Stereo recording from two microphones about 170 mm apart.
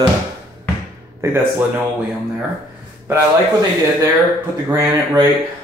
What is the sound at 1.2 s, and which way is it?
Speech, 15° right (ahead or behind).